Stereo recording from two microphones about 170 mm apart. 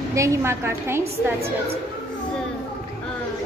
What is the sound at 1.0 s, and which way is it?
Speech, 35° right (ahead or behind).